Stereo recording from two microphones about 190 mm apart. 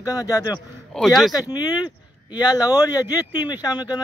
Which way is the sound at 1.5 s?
20° left (ahead or behind).